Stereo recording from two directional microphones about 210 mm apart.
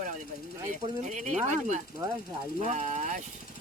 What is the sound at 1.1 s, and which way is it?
Speech, 35° right (ahead or behind).